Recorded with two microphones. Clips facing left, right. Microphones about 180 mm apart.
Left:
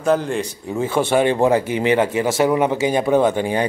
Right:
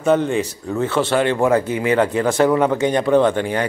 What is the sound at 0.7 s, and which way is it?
Speech, 10° left (ahead or behind).